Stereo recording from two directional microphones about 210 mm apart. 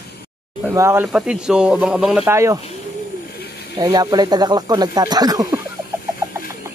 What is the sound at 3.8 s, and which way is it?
Speech, 20° right (ahead or behind).